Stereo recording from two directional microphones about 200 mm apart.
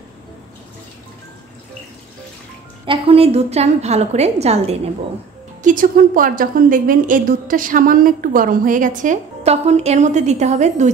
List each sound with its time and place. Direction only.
2.9 s a woman's voice: 30° right (ahead or behind)